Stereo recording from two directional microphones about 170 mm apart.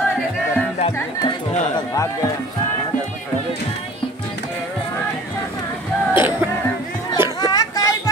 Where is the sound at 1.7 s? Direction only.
20° left (ahead or behind).